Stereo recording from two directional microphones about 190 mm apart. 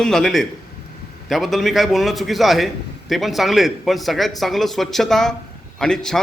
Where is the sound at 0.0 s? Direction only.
Centre (ahead or behind).